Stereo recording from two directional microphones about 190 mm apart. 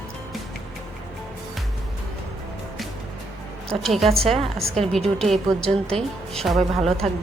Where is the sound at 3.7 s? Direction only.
Centre (ahead or behind).